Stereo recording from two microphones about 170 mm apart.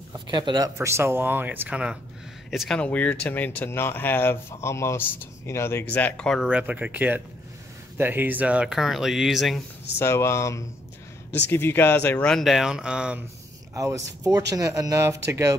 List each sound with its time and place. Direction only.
0.3 s speech: 25° right (ahead or behind)
0.7 s speech: 15° right (ahead or behind); by 6.5 s 5° left (ahead or behind)
6.5 s speech: 10° right (ahead or behind)
9.9 s speech: 15° left (ahead or behind); by 13.2 s 5° right (ahead or behind)
13.7 s speech: 20° right (ahead or behind)